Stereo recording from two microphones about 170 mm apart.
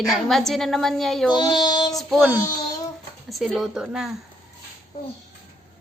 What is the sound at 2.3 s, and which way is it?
Child singing, 20° left (ahead or behind).